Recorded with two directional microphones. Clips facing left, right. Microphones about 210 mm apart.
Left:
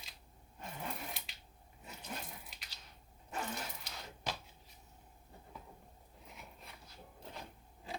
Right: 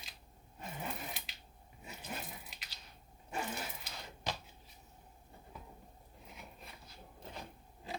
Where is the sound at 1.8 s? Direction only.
5° right (ahead or behind).